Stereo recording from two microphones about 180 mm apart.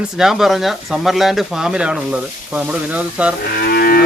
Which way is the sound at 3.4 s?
60° left (ahead or behind).